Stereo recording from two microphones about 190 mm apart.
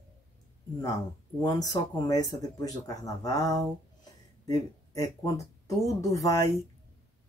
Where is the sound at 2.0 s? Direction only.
20° left (ahead or behind).